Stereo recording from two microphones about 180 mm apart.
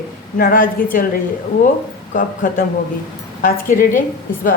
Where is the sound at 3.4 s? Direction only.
45° left (ahead or behind).